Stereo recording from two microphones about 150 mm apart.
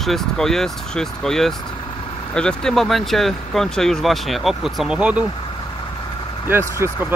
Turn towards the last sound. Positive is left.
turn(degrees=-15)  # may be behind; listen again after turning